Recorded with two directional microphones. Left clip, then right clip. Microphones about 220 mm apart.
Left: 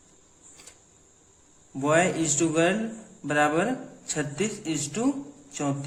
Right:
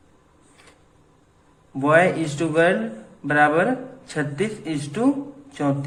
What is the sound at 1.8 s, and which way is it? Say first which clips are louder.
A man's voice: right 6 dB; 30° left (ahead or behind).